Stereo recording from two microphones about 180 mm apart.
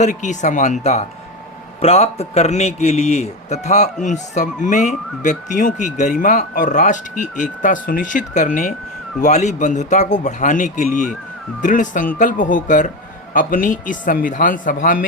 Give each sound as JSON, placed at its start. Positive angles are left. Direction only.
{"t": 0.0, "sound": "a man's voice", "side_deg": 40}